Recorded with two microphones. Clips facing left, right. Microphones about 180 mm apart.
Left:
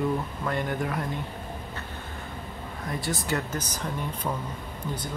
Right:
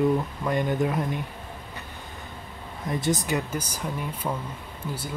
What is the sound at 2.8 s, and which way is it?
Speech, 20° right (ahead or behind).